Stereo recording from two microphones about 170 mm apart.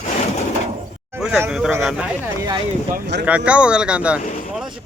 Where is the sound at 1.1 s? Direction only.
10° right (ahead or behind).